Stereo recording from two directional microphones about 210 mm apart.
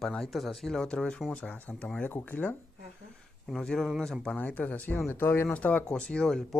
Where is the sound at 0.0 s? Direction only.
Centre (ahead or behind).